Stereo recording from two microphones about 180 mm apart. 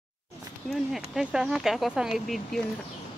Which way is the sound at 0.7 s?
Centre (ahead or behind).